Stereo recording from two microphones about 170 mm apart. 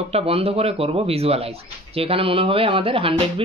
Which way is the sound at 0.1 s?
35° right (ahead or behind).